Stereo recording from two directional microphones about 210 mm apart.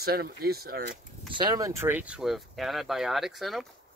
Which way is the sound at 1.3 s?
20° right (ahead or behind).